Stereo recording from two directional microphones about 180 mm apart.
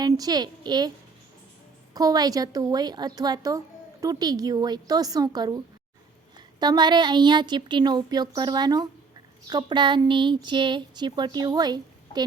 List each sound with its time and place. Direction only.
0.0 s a woman's voice: 20° right (ahead or behind)
6.6 s speech: 25° right (ahead or behind)